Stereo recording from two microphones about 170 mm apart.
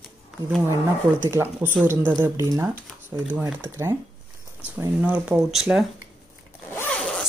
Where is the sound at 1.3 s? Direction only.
15° right (ahead or behind).